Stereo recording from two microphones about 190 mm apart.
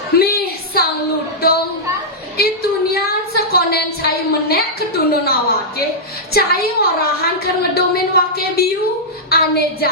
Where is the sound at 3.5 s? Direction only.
55° left (ahead or behind).